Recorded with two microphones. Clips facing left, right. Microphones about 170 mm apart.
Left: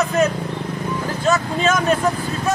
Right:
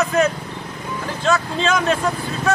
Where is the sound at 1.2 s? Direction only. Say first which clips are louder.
Even; 10° left (ahead or behind).